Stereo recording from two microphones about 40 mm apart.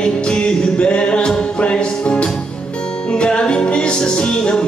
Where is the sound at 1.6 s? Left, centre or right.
Left.